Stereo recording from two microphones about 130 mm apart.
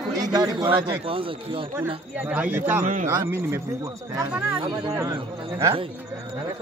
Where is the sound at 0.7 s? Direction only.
40° right (ahead or behind).